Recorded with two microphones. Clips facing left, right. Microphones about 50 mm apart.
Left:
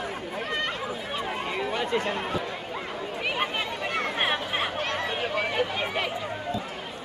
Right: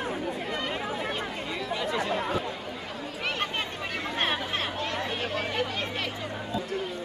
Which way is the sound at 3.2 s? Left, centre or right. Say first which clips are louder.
Left 2 dB; centre.